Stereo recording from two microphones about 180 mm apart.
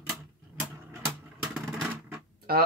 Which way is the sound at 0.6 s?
5° right (ahead or behind).